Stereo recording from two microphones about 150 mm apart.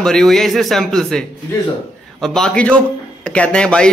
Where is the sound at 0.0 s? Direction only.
5° left (ahead or behind).